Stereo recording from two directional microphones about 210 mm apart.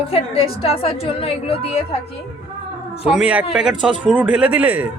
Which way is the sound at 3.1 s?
5° right (ahead or behind).